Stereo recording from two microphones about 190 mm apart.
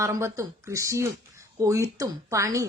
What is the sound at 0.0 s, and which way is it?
Speech, 15° right (ahead or behind).